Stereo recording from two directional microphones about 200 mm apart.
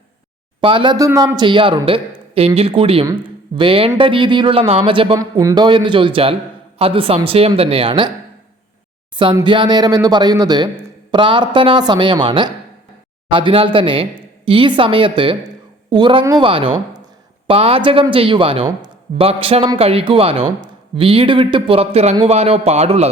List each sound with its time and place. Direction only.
0.6 s a man's voice: 25° right (ahead or behind)
9.1 s a man's voice: 25° right (ahead or behind)